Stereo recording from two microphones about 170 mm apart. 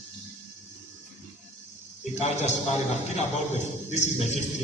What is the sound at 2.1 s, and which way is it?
A man's voice, 40° left (ahead or behind).